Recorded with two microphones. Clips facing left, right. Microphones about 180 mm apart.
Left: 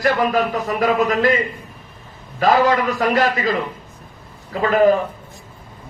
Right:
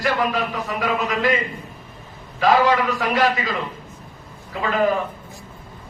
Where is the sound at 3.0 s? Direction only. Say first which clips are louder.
Left 3 dB; 45° left (ahead or behind).